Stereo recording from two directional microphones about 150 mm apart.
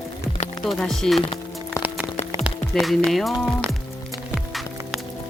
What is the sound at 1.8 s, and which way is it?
Music, 5° right (ahead or behind).